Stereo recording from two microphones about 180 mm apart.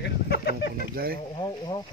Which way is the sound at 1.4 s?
25° left (ahead or behind).